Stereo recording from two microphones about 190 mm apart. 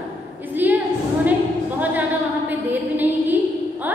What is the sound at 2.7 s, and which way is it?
Speech, 10° right (ahead or behind).